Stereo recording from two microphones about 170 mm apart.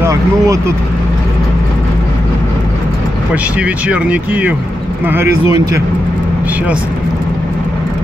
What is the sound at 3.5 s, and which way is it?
Speech, 10° right (ahead or behind).